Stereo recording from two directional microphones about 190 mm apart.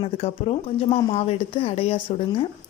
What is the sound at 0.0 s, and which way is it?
A woman's voice, 30° left (ahead or behind).